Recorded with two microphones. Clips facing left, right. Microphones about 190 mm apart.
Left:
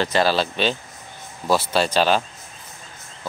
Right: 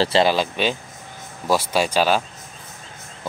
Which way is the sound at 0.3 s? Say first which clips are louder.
Even; 10° right (ahead or behind).